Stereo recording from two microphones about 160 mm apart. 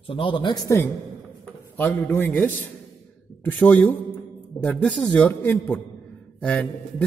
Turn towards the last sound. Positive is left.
turn(degrees=5)  # may be behind; listen again after turning